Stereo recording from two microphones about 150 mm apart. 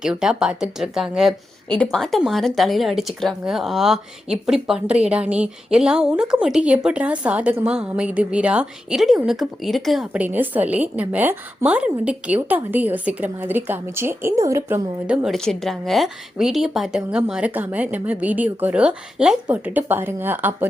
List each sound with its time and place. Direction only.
0.0 s a woman's voice: 5° right (ahead or behind); by 14.8 s 20° right (ahead or behind)
15.0 s a woman's voice: 5° right (ahead or behind)